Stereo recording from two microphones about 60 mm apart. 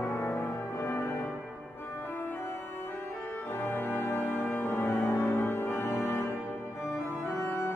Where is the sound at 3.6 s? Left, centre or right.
Left.